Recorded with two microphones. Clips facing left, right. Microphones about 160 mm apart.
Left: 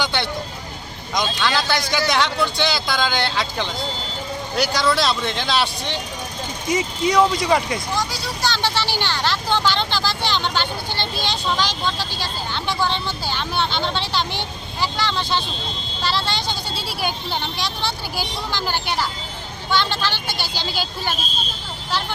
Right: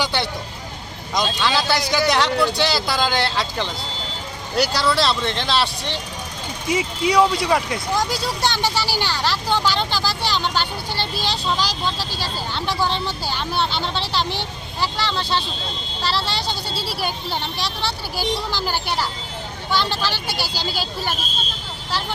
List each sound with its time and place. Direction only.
1.1 s speech: 5° right (ahead or behind)
4.5 s speech: 35° right (ahead or behind)
4.8 s speech: 5° right (ahead or behind)
8.4 s speech: 20° right (ahead or behind)
20.1 s speech: 35° right (ahead or behind)
20.6 s speech: 5° right (ahead or behind)